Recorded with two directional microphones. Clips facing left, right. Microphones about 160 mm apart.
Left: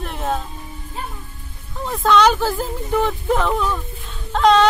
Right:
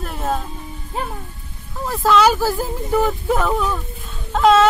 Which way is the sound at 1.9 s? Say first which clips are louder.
Even; 5° right (ahead or behind).